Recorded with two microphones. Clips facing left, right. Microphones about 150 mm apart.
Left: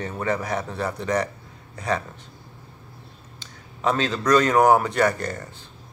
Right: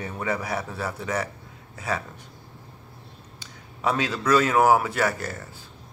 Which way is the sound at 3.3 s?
10° right (ahead or behind).